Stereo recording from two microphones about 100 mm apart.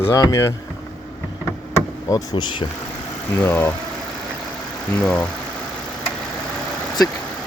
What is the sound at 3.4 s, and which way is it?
Speech, 20° left (ahead or behind).